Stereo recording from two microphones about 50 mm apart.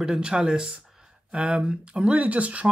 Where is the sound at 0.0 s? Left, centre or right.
Centre.